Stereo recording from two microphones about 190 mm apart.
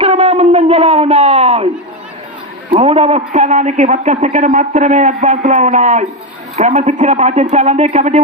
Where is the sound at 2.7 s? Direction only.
35° right (ahead or behind).